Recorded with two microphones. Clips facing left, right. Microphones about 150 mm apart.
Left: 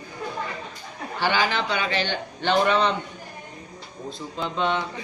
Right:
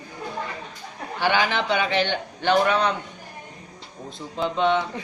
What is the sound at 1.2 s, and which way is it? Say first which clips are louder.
A man's voice: right 1 dB; 15° right (ahead or behind).